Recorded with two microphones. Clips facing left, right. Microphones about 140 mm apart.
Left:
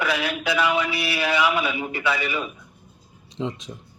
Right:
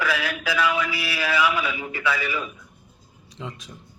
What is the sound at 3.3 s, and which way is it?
Speech, 25° left (ahead or behind).